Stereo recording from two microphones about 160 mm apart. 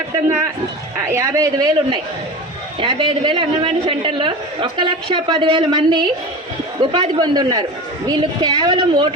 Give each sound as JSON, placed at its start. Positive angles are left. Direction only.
{"t": 0.9, "sound": "a woman's voice", "side_deg": -20}